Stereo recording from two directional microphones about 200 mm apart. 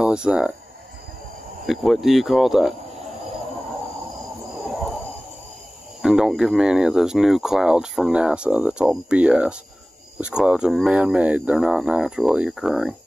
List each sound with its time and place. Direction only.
0.0 s speech: 5° right (ahead or behind)
1.7 s speech: centre (ahead or behind)
6.0 s speech: 5° right (ahead or behind)